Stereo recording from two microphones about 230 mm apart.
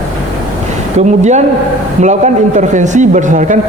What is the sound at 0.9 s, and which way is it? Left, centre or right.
A man's voice, right.